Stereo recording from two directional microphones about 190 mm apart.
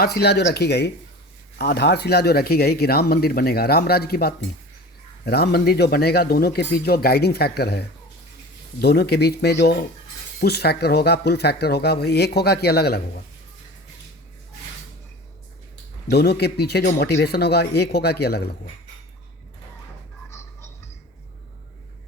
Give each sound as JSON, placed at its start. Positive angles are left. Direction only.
{"t": 0.0, "sound": "speech", "side_deg": 55}
{"t": 16.0, "sound": "speech", "side_deg": 60}